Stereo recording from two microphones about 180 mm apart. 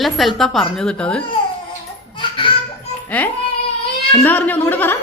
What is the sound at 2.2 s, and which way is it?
Baby laughter, 30° left (ahead or behind).